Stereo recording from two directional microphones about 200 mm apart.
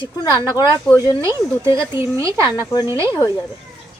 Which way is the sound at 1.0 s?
15° right (ahead or behind).